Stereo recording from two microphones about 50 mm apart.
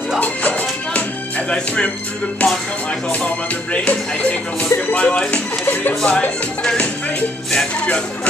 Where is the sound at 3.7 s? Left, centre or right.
Left.